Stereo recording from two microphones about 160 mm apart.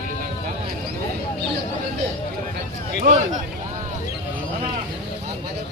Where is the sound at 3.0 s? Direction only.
50° right (ahead or behind).